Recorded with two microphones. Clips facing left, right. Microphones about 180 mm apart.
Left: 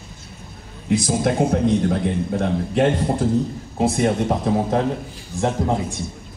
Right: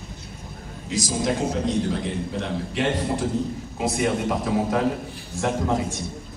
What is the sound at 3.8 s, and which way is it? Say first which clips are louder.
A man's voice: left 5 dB; 30° left (ahead or behind).